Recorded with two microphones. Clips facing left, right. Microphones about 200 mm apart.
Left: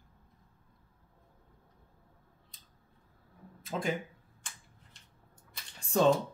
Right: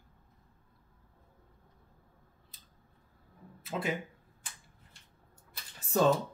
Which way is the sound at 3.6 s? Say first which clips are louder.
Left 1 dB; 5° right (ahead or behind).